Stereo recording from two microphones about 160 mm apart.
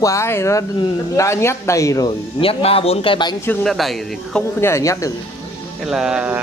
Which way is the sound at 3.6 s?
Centre (ahead or behind).